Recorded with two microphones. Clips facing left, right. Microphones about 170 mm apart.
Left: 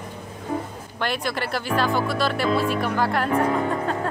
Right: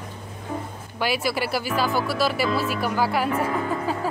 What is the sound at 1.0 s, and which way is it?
Speech, 5° right (ahead or behind).